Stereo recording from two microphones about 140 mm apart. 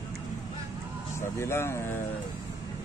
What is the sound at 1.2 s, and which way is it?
Speech, 20° left (ahead or behind).